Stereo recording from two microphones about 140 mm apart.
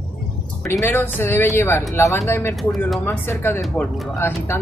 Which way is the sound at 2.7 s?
Centre (ahead or behind).